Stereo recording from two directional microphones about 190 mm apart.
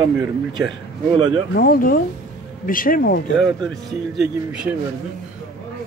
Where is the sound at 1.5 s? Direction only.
50° left (ahead or behind).